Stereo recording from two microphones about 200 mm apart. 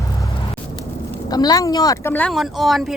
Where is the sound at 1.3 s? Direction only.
20° left (ahead or behind); by 2.9 s centre (ahead or behind).